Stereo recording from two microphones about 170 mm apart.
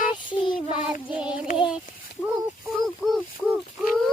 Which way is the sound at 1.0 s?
5° right (ahead or behind).